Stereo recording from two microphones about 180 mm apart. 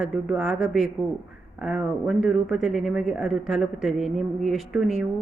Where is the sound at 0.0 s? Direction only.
5° right (ahead or behind).